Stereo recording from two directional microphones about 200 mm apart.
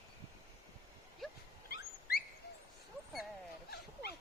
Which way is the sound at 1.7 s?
50° left (ahead or behind).